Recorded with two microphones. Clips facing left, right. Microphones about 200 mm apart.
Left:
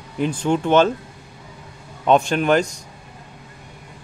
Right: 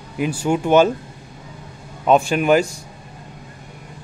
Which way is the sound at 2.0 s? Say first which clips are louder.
Right 1 dB; 5° right (ahead or behind).